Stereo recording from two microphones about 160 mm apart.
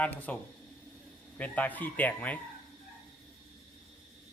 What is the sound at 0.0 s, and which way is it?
Speech, 10° left (ahead or behind).